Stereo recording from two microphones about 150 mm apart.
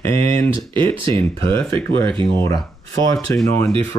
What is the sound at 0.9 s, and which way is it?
Speech, 35° right (ahead or behind).